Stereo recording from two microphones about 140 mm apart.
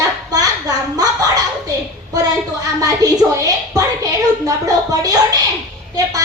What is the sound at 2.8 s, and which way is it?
A woman's voice, 25° right (ahead or behind).